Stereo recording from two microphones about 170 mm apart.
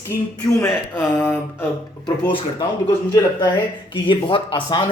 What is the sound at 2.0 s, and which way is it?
Speech, 25° left (ahead or behind).